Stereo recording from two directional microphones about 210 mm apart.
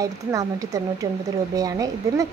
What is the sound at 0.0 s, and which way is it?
A woman's voice, 15° right (ahead or behind).